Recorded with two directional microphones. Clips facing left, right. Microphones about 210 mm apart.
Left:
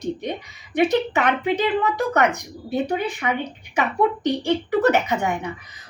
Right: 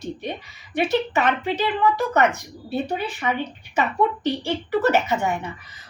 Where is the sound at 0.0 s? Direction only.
15° left (ahead or behind).